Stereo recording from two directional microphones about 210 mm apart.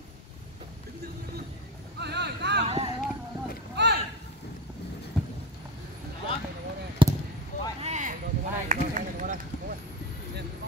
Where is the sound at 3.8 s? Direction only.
55° right (ahead or behind).